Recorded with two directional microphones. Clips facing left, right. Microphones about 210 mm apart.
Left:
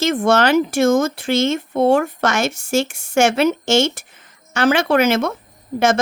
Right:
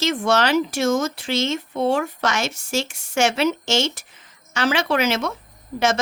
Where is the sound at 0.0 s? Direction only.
50° left (ahead or behind).